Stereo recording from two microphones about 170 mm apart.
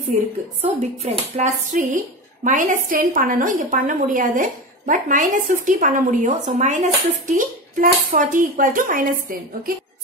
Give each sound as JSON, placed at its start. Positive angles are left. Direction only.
{"t": 0.6, "sound": "a woman's voice", "side_deg": -40}